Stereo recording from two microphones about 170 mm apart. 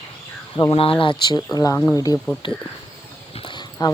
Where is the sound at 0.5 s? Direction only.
30° left (ahead or behind).